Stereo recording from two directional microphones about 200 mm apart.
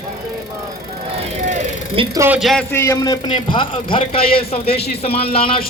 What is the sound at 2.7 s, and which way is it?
A man's voice, 15° left (ahead or behind).